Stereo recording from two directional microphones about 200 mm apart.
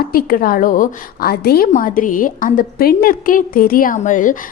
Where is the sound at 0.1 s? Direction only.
45° left (ahead or behind).